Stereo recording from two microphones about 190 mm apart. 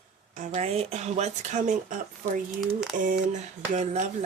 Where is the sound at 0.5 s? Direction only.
35° right (ahead or behind).